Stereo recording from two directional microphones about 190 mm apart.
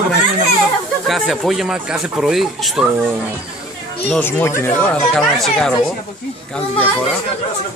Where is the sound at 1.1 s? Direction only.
Centre (ahead or behind).